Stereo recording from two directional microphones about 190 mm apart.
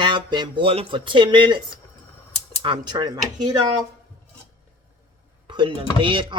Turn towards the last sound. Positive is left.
turn(degrees=-25)  # may be behind; listen again after turning